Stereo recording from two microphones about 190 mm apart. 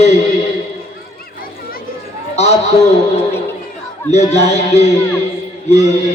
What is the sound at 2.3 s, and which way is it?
Speech, 35° left (ahead or behind).